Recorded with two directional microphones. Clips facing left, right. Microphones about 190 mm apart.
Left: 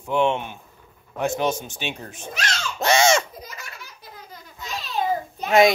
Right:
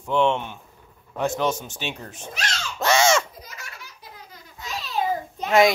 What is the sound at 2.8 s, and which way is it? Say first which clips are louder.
Baby cry: left 1 dB; 15° left (ahead or behind).